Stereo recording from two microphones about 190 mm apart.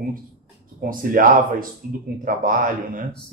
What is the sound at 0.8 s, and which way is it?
Speech, 45° right (ahead or behind).